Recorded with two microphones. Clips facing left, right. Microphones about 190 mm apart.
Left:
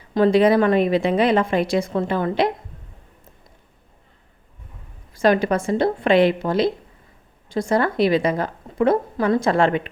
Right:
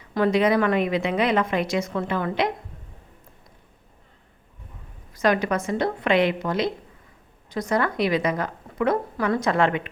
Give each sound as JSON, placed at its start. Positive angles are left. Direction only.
{"t": 0.1, "sound": "a woman's voice", "side_deg": 30}
{"t": 5.1, "sound": "a woman's voice", "side_deg": 30}